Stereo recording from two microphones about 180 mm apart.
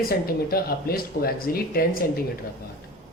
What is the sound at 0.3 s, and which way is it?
Speech, 55° left (ahead or behind).